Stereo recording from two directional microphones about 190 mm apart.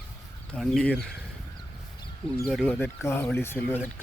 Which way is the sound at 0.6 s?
Centre (ahead or behind).